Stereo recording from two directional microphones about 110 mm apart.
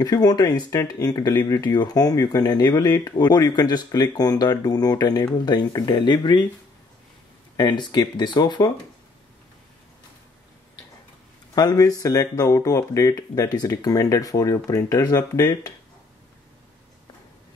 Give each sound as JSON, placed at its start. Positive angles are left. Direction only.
{"t": 0.0, "sound": "speech", "side_deg": 35}
{"t": 7.5, "sound": "speech", "side_deg": 40}
{"t": 11.5, "sound": "speech", "side_deg": 35}